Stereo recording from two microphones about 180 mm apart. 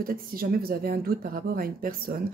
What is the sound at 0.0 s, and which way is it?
Speech, 55° right (ahead or behind).